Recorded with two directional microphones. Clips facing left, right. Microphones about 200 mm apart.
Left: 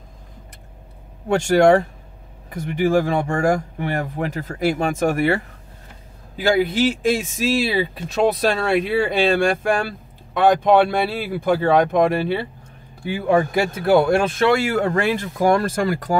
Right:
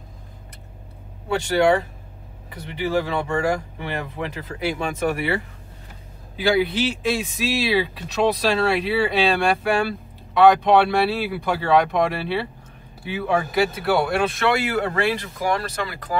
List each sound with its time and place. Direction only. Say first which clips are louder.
1.3 s speech: left 4 dB; 45° left (ahead or behind)
13.8 s speech: left 5 dB; 45° left (ahead or behind)